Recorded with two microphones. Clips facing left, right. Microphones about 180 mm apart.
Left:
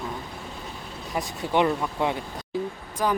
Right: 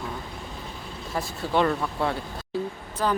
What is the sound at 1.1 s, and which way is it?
Speech, 15° left (ahead or behind).